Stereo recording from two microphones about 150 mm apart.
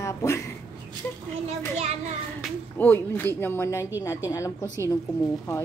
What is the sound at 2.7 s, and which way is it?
Speech, 15° left (ahead or behind).